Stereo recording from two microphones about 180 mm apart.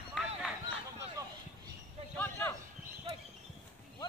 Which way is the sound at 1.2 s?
20° right (ahead or behind).